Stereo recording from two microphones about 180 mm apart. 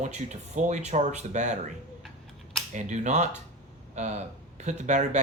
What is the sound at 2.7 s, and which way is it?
Speech, 40° right (ahead or behind).